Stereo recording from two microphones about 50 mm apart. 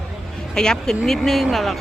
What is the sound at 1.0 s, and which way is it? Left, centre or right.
Speech, centre.